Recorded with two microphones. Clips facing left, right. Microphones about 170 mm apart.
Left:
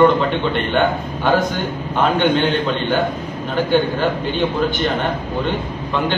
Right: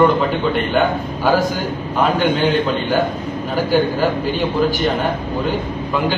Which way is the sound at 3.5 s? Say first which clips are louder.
Even; 5° right (ahead or behind).